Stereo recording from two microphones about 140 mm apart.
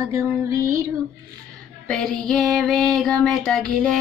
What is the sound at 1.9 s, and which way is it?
Music, 5° left (ahead or behind).